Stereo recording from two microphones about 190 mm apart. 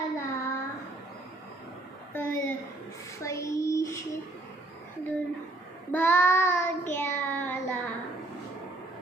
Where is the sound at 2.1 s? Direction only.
10° left (ahead or behind).